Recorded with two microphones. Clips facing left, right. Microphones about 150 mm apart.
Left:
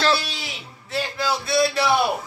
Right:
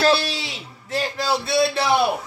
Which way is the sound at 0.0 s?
30° right (ahead or behind).